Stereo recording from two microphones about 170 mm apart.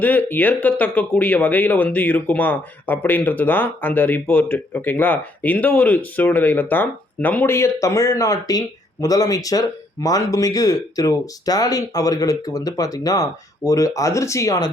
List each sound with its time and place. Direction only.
0.0 s speech: 10° left (ahead or behind)